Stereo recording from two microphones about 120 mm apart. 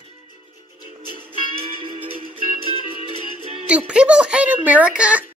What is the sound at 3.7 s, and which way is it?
Speech, 10° right (ahead or behind).